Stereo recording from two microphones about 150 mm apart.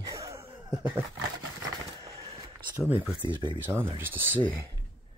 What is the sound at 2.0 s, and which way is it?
Skateboard, 20° right (ahead or behind).